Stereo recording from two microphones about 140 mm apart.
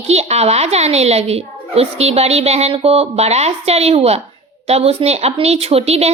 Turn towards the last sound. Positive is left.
turn(degrees=-45)  # may be behind; listen again after turning